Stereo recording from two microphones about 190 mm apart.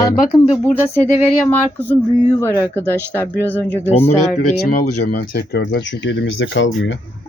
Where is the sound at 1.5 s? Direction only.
10° left (ahead or behind).